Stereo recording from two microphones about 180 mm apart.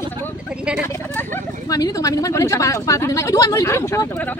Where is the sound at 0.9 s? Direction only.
15° left (ahead or behind).